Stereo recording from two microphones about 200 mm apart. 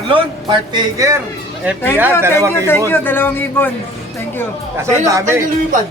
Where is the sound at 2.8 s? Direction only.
10° left (ahead or behind).